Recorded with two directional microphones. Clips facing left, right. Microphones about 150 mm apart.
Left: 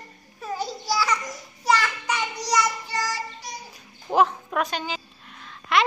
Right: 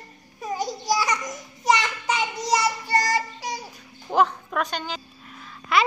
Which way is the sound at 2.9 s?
85° right.